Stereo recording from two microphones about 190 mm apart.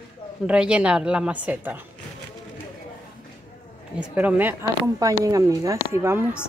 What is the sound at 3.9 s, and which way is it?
Speech, 10° right (ahead or behind).